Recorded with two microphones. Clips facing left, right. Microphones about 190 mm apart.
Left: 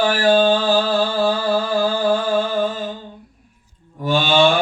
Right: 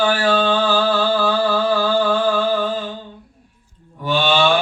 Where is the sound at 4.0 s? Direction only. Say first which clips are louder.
Even; 45° left (ahead or behind).